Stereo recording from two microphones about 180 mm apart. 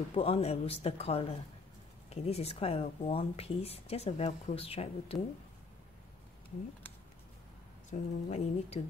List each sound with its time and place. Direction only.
0.1 s speech: 30° left (ahead or behind)
7.9 s speech: 40° left (ahead or behind)